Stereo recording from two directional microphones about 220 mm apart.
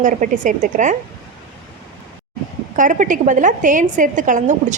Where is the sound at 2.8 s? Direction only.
35° right (ahead or behind).